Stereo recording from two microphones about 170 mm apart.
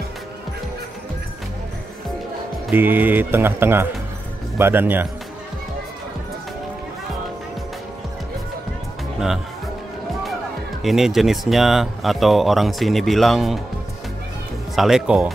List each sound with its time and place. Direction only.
2.7 s speech: 10° right (ahead or behind)
10.8 s speech: centre (ahead or behind)
14.8 s speech: 5° right (ahead or behind)